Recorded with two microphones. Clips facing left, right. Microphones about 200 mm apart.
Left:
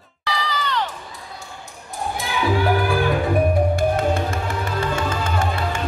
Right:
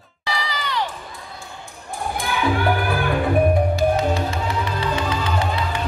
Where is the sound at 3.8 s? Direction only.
50° left (ahead or behind).